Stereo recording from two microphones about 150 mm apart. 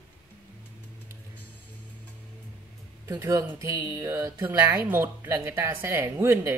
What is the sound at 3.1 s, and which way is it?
Speech, 20° right (ahead or behind).